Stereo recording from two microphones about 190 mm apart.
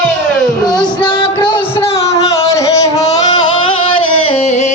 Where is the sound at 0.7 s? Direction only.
20° left (ahead or behind).